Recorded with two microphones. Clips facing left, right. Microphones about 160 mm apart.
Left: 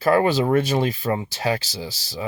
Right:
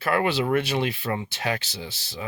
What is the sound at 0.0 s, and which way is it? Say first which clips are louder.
Speech: left 5 dB; 40° left (ahead or behind).